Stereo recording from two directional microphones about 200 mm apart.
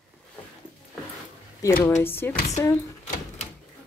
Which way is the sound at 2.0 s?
10° left (ahead or behind).